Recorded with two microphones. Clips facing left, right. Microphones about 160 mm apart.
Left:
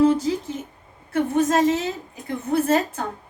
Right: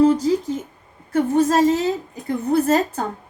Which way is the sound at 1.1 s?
35° right (ahead or behind).